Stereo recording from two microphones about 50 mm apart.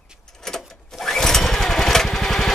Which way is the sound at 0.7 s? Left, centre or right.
Centre.